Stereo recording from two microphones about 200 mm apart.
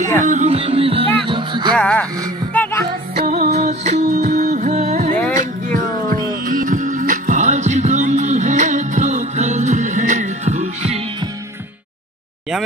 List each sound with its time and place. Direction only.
0.2 s music: 35° right (ahead or behind)
1.8 s speech: 5° left (ahead or behind)
2.5 s music: 10° left (ahead or behind)
3.3 s music: 35° right (ahead or behind)